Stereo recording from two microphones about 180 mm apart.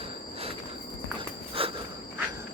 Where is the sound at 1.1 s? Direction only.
30° right (ahead or behind).